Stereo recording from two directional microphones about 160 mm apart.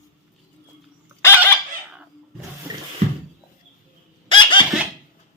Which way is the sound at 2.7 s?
25° right (ahead or behind).